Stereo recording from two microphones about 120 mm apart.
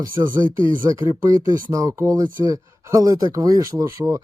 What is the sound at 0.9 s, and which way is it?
Speech, 25° right (ahead or behind).